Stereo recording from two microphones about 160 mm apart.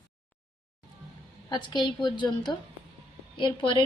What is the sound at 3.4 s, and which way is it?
Speech, 30° left (ahead or behind).